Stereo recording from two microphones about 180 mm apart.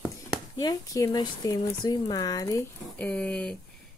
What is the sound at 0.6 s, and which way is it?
Speech, 20° left (ahead or behind).